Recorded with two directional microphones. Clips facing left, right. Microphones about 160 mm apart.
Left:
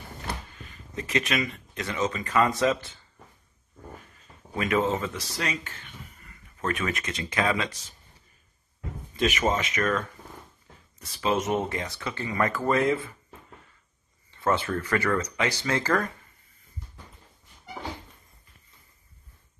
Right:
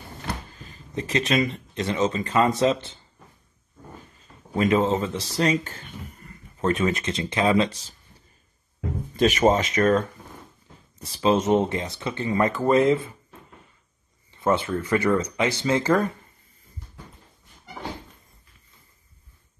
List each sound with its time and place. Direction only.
0.5 s speech: 30° right (ahead or behind)
4.6 s speech: 30° right (ahead or behind)
9.1 s speech: 35° right (ahead or behind)
14.3 s a sound: 20° right (ahead or behind)
14.8 s speech: 20° right (ahead or behind)